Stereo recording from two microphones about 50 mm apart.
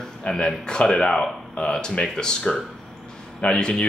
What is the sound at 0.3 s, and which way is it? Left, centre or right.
Speech, centre.